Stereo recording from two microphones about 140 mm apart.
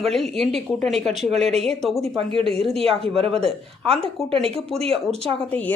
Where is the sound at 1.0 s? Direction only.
50° right (ahead or behind).